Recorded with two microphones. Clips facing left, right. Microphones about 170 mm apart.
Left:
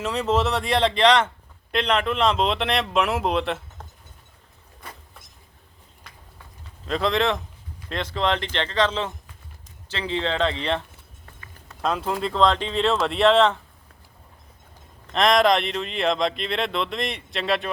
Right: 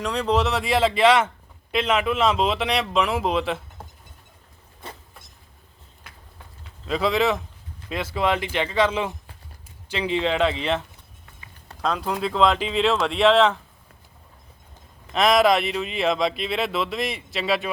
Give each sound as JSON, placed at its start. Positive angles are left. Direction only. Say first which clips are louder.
{"t": 0.0, "sound": "speech", "louder": "even", "side_deg": 0}
{"t": 4.8, "sound": "vehicle", "louder": "right 3 dB", "side_deg": -25}
{"t": 6.8, "sound": "speech", "louder": "right 1 dB", "side_deg": -5}
{"t": 15.0, "sound": "speech", "louder": "right 1 dB", "side_deg": -5}